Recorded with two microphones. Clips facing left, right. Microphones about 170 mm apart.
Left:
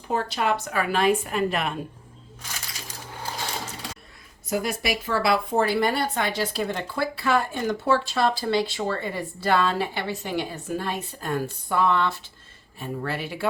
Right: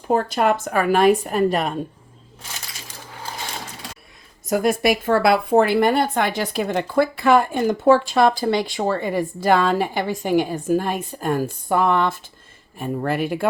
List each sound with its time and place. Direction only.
0.1 s a woman's voice: 50° right (ahead or behind)
4.4 s a woman's voice: 50° right (ahead or behind)